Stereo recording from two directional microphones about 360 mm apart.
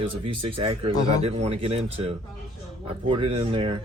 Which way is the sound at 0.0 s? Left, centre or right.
Centre.